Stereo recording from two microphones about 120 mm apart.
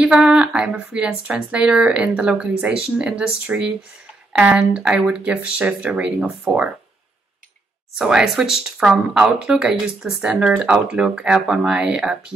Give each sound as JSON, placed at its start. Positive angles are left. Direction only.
{"t": 0.0, "sound": "speech", "side_deg": -5}
{"t": 8.0, "sound": "speech", "side_deg": -5}